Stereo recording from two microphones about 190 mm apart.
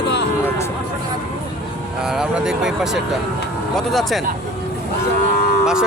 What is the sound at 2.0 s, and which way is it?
Speech, 5° right (ahead or behind).